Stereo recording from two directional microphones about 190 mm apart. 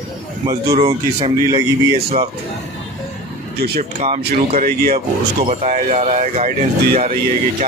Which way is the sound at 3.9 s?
35° right (ahead or behind).